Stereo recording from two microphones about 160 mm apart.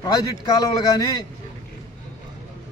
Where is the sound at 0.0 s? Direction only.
25° left (ahead or behind).